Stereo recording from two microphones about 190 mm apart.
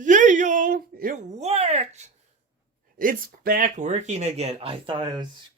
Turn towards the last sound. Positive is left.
turn(degrees=-25)  # may be behind; listen again after turning